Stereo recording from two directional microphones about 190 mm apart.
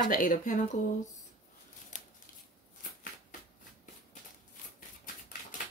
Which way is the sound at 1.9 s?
40° left (ahead or behind).